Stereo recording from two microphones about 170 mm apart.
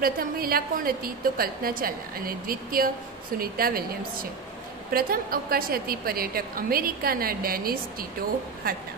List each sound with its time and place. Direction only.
0.0 s a woman's voice: 60° right (ahead or behind)